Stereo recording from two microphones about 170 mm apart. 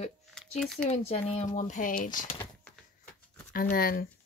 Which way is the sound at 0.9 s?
40° left (ahead or behind).